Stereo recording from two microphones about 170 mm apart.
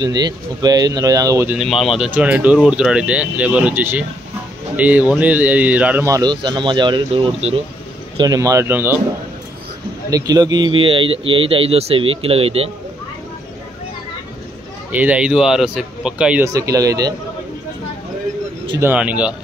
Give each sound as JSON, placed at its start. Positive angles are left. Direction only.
{"t": 0.0, "sound": "a man's voice", "side_deg": -25}
{"t": 1.6, "sound": "a man's voice", "side_deg": 0}
{"t": 8.2, "sound": "speech", "side_deg": -20}
{"t": 10.0, "sound": "speech", "side_deg": -20}
{"t": 14.9, "sound": "speech", "side_deg": -10}
{"t": 16.4, "sound": "a man's voice", "side_deg": -20}
{"t": 18.8, "sound": "speech", "side_deg": -10}